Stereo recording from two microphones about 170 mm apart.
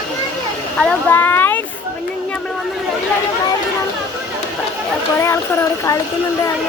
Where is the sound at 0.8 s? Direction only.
10° left (ahead or behind).